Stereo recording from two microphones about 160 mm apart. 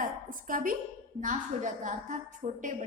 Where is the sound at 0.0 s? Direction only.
55° right (ahead or behind).